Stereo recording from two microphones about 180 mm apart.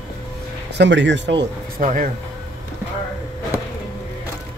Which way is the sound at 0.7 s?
90° right.